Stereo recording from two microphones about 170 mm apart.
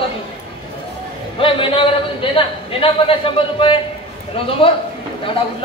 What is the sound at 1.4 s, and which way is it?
A man's voice, 30° left (ahead or behind).